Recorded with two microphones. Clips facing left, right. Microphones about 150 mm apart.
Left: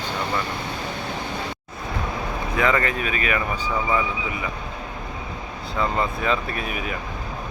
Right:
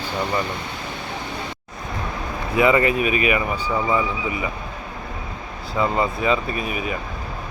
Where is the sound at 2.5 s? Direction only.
10° right (ahead or behind).